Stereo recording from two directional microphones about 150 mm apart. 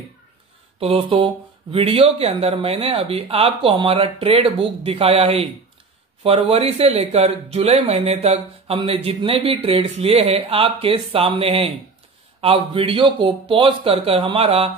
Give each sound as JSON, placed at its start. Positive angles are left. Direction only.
{"t": 0.7, "sound": "speech", "side_deg": -40}